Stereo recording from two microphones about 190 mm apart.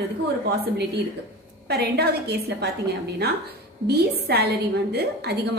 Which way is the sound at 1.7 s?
60° right (ahead or behind).